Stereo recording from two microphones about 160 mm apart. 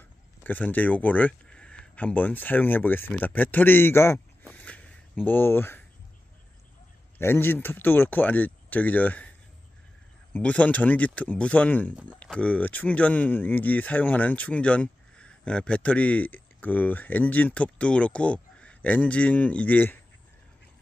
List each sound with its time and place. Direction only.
0.4 s a man's voice: 10° left (ahead or behind)
4.6 s a sound: 10° left (ahead or behind)
5.2 s speech: 10° left (ahead or behind)
7.2 s speech: 15° left (ahead or behind)
10.3 s speech: 10° left (ahead or behind)